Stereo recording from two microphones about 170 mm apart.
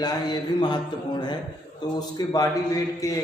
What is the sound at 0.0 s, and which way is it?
Speech, 25° left (ahead or behind).